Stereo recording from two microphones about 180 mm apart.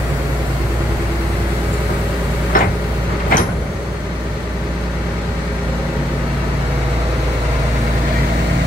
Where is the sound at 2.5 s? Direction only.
50° left (ahead or behind).